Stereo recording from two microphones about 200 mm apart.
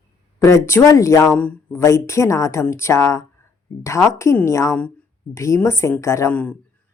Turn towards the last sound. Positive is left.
turn(degrees=5)  # may be behind; listen again after turning